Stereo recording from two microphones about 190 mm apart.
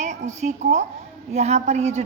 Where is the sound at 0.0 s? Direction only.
40° right (ahead or behind).